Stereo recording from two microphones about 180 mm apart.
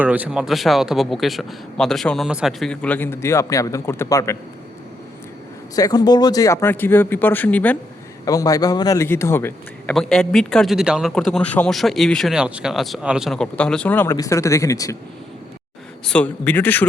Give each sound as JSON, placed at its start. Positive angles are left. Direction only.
{"t": 0.0, "sound": "speech", "side_deg": -10}
{"t": 5.7, "sound": "speech", "side_deg": 20}
{"t": 8.2, "sound": "a man's voice", "side_deg": 20}
{"t": 9.9, "sound": "speech", "side_deg": 0}
{"t": 16.0, "sound": "speech", "side_deg": 5}